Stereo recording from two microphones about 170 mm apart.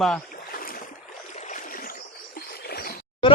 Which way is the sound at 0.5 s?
60° left (ahead or behind).